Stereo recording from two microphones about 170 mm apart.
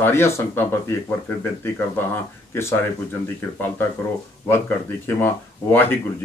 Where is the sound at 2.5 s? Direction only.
15° left (ahead or behind).